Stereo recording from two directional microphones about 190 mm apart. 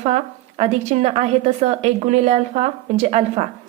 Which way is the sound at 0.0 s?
35° right (ahead or behind).